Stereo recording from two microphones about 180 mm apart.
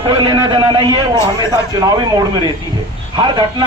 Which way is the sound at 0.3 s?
25° right (ahead or behind).